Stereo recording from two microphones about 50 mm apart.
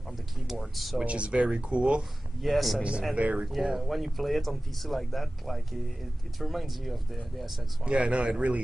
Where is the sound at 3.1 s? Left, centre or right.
Right.